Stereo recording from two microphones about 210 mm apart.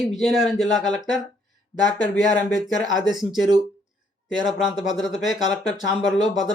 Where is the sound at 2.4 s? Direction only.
Centre (ahead or behind).